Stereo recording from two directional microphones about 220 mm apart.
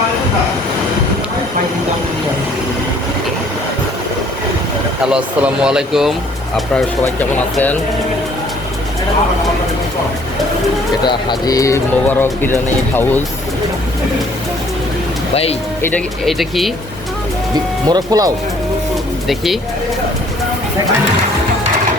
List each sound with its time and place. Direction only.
5.0 s speech: 5° right (ahead or behind)
11.0 s speech: 20° left (ahead or behind)
15.8 s speech: 5° left (ahead or behind)
17.8 s speech: 15° right (ahead or behind)